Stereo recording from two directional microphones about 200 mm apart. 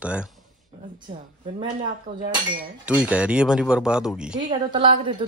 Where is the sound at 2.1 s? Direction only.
45° right (ahead or behind).